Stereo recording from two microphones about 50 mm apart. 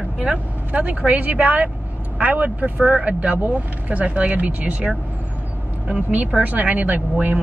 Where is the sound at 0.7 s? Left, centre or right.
Right.